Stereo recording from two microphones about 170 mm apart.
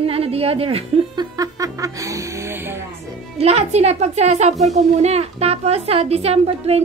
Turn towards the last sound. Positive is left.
turn(degrees=-35)  # may be behind; listen again after turning